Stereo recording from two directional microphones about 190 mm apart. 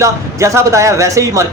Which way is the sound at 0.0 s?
15° right (ahead or behind).